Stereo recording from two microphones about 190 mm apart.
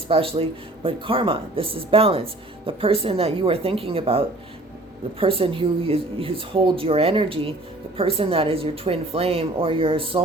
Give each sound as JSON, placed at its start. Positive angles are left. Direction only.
{"t": 0.1, "sound": "speech", "side_deg": -30}